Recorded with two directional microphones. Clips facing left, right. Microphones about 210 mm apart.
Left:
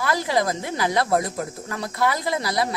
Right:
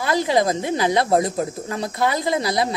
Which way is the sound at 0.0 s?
20° right (ahead or behind).